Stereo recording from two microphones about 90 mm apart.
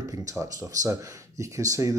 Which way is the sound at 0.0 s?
40° right (ahead or behind).